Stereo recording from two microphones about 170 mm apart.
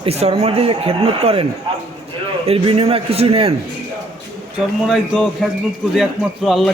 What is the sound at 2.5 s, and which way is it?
A man's voice, 35° right (ahead or behind).